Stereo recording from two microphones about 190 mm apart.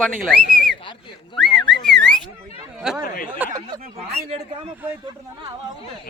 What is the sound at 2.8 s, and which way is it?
Speech, 5° right (ahead or behind).